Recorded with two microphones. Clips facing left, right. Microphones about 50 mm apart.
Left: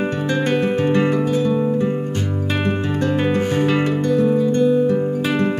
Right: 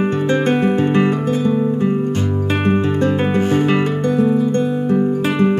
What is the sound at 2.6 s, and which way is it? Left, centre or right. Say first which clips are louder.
Music: right 5 dB; right.